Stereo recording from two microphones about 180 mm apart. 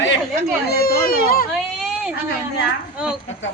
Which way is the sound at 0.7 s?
55° left (ahead or behind).